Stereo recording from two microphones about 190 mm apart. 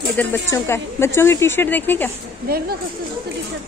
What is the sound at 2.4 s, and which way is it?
Speech, 50° right (ahead or behind).